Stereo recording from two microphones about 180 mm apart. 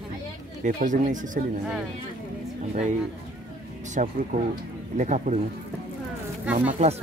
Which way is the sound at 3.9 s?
45° right (ahead or behind).